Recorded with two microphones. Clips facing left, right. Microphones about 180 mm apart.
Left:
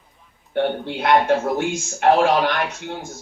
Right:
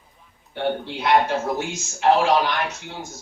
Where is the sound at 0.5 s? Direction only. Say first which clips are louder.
Left 3 dB; 55° left (ahead or behind).